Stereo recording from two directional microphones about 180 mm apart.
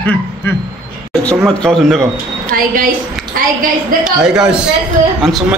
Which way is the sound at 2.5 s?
50° right (ahead or behind).